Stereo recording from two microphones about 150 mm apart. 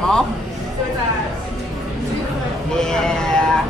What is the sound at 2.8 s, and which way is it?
Speech, 5° left (ahead or behind).